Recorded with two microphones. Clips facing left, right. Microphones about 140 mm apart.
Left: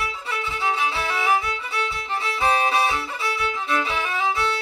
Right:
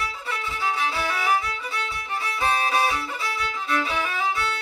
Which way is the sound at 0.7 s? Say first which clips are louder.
Left 1 dB; 20° left (ahead or behind).